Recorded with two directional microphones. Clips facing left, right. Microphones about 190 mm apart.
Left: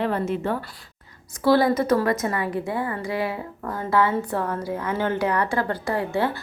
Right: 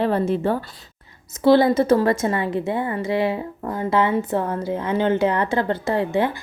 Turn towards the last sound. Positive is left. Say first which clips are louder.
# right 3 dB
turn(degrees=-20)  # may be behind; listen again after turning